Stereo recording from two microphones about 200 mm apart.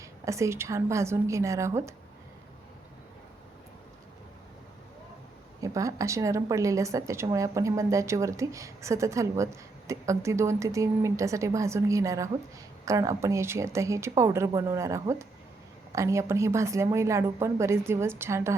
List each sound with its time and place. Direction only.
0.0 s a woman's voice: 15° right (ahead or behind)
5.6 s a woman's voice: 15° right (ahead or behind)